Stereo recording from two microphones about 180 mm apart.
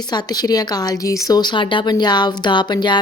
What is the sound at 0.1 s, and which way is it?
A woman's voice, 20° left (ahead or behind).